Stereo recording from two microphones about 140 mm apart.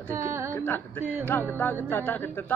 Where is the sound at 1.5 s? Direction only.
15° left (ahead or behind).